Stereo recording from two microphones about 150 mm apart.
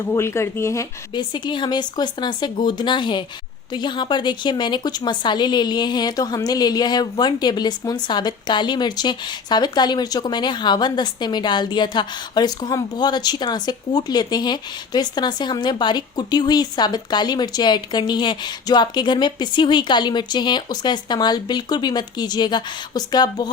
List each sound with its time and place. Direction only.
0.1 s a woman's voice: 20° left (ahead or behind)